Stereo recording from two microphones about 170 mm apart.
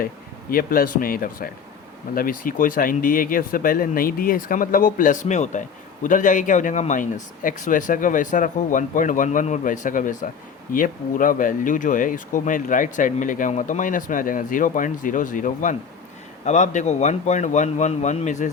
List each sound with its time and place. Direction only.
0.5 s speech: 60° left (ahead or behind)